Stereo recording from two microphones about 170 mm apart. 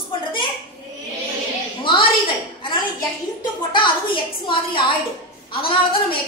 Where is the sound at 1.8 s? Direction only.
30° left (ahead or behind).